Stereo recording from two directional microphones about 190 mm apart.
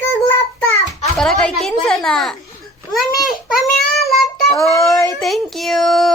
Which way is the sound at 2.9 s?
Centre (ahead or behind).